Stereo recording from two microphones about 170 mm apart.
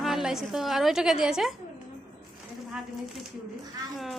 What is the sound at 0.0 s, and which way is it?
A woman's voice, centre (ahead or behind).